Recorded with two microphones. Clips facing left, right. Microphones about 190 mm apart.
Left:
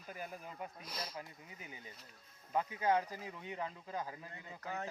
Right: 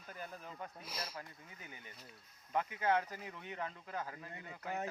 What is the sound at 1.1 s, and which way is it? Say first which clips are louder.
Speech: left 2 dB; 20° left (ahead or behind).